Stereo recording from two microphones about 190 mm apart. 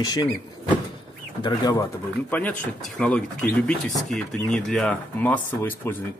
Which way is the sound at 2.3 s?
10° left (ahead or behind).